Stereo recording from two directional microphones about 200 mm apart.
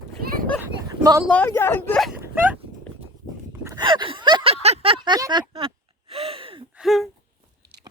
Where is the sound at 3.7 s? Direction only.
20° right (ahead or behind).